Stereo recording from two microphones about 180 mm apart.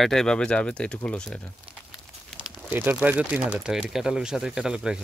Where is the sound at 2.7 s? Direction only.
10° right (ahead or behind).